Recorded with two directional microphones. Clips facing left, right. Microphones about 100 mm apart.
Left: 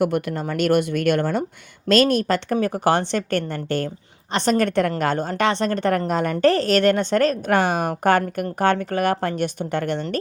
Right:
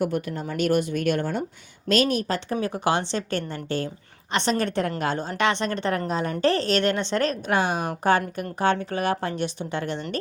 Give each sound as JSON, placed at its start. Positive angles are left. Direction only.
{"t": 0.0, "sound": "speech", "side_deg": 80}
{"t": 2.7, "sound": "a woman's voice", "side_deg": 45}
{"t": 4.3, "sound": "a woman's voice", "side_deg": 40}
{"t": 5.3, "sound": "speech", "side_deg": 40}
{"t": 6.1, "sound": "a woman's voice", "side_deg": 60}
{"t": 6.5, "sound": "a woman's voice", "side_deg": 45}